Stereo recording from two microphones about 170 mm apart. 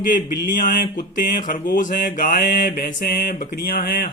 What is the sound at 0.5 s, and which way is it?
Speech, 60° left (ahead or behind).